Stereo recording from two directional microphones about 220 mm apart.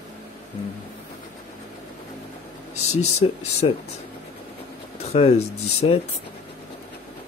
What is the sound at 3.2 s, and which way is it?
Speech, 25° left (ahead or behind).